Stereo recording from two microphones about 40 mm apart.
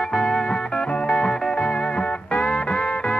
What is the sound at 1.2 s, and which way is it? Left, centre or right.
Music, centre.